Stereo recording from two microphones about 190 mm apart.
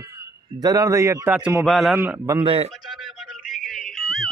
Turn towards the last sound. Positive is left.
turn(degrees=0)  # may be behind; listen again after turning